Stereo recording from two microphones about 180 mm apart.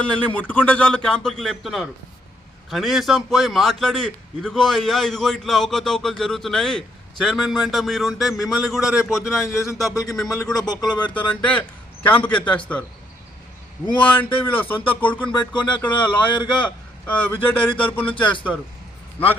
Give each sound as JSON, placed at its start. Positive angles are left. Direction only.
{"t": 0.0, "sound": "a man's voice", "side_deg": 5}
{"t": 9.9, "sound": "speech", "side_deg": 20}
{"t": 10.2, "sound": "a man's voice", "side_deg": 0}
{"t": 10.6, "sound": "speech", "side_deg": 20}
{"t": 10.9, "sound": "speech", "side_deg": 10}
{"t": 13.8, "sound": "speech", "side_deg": 25}
{"t": 14.2, "sound": "speech", "side_deg": 10}
{"t": 15.3, "sound": "speech", "side_deg": 25}
{"t": 17.1, "sound": "speech", "side_deg": 10}
{"t": 18.0, "sound": "speech", "side_deg": 30}
{"t": 19.2, "sound": "speech", "side_deg": 10}